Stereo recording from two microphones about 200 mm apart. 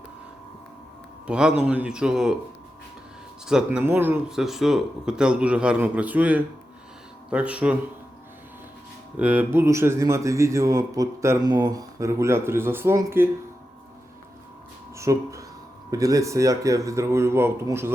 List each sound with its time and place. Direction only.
1.3 s speech: 5° right (ahead or behind)
3.4 s speech: 5° right (ahead or behind)
9.1 s speech: 5° right (ahead or behind)
14.9 s speech: 15° right (ahead or behind)